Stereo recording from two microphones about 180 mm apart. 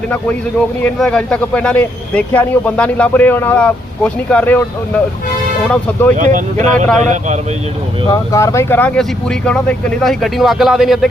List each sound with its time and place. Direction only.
0.9 s a man's voice: 5° left (ahead or behind)
5.6 s a man's voice: 10° left (ahead or behind)
6.1 s speech: 45° right (ahead or behind)
8.1 s a man's voice: 20° left (ahead or behind); by 11.1 s centre (ahead or behind)